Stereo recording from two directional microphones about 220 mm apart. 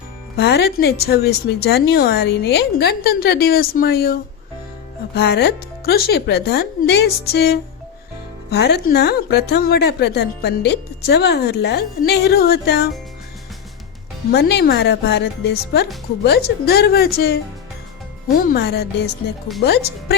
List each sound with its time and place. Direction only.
0.3 s a woman's voice: 50° left (ahead or behind)
14.3 s a woman's voice: 45° left (ahead or behind)
18.4 s a woman's voice: 45° left (ahead or behind)